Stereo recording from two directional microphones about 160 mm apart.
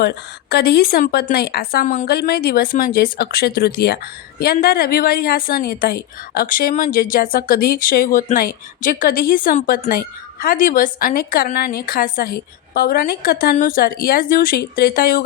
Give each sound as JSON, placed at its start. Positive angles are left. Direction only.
{"t": 0.0, "sound": "a woman's voice", "side_deg": 85}
{"t": 2.0, "sound": "a woman's voice", "side_deg": 75}